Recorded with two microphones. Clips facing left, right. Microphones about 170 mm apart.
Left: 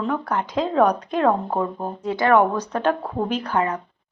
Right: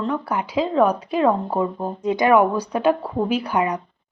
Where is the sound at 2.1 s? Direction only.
20° right (ahead or behind).